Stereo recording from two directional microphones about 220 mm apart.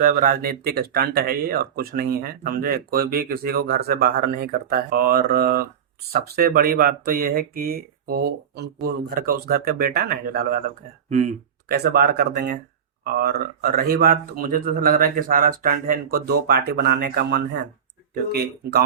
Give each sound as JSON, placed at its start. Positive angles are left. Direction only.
{"t": 0.0, "sound": "speech", "side_deg": -35}
{"t": 11.7, "sound": "speech", "side_deg": -45}